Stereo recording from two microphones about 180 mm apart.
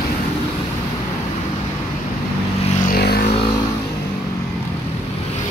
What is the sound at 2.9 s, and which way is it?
Vehicle, 60° left (ahead or behind).